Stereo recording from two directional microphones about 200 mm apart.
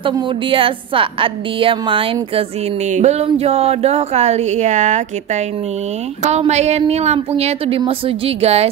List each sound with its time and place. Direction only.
0.0 s a woman's voice: 25° right (ahead or behind)